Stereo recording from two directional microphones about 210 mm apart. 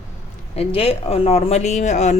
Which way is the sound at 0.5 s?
30° left (ahead or behind).